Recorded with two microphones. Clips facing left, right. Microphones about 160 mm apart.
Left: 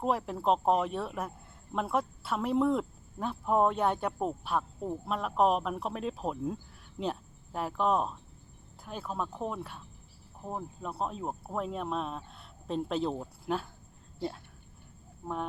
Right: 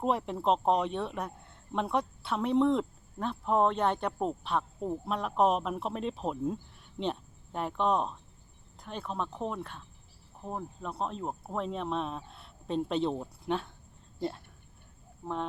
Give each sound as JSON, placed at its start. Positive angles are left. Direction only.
{"t": 0.0, "sound": "speech", "side_deg": 0}